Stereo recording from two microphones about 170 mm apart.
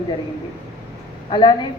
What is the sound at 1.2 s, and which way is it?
Speech, 30° left (ahead or behind).